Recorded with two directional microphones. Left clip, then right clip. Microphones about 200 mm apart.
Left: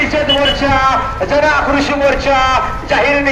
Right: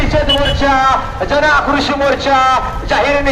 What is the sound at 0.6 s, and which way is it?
A man's voice, 30° right (ahead or behind).